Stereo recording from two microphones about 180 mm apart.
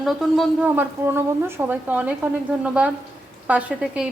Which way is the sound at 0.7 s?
10° right (ahead or behind).